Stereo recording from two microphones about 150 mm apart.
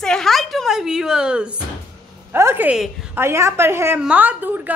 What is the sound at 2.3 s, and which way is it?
A woman's voice, 15° right (ahead or behind).